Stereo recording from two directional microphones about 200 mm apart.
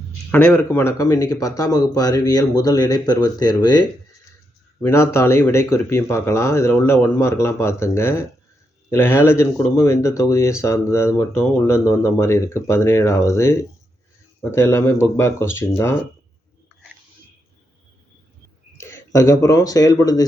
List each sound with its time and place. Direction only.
0.3 s speech: 10° left (ahead or behind)
18.8 s a sound: 15° left (ahead or behind)
19.4 s speech: 15° left (ahead or behind)